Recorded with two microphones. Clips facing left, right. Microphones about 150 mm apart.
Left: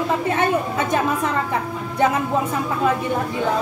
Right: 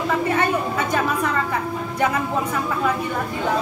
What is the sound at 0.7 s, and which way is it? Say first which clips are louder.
Speech: left 1 dB; 20° left (ahead or behind).